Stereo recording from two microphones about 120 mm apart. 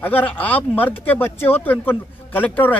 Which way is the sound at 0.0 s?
15° left (ahead or behind).